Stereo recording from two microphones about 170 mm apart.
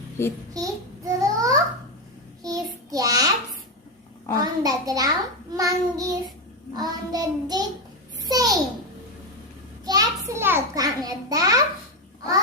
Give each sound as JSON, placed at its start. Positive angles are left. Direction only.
{"t": 0.2, "sound": "a child's voice", "side_deg": 15}
{"t": 0.5, "sound": "a sound", "side_deg": -20}
{"t": 2.4, "sound": "child singing", "side_deg": -20}
{"t": 4.4, "sound": "a child's voice", "side_deg": -20}
{"t": 9.8, "sound": "a sound", "side_deg": -20}
{"t": 10.3, "sound": "a child's voice", "side_deg": -15}